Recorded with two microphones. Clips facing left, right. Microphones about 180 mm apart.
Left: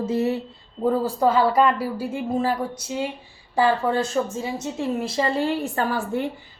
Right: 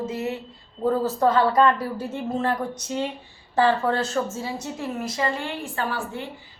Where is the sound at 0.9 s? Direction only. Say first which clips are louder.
Left 1 dB; 10° left (ahead or behind); by 6.0 s 40° left (ahead or behind).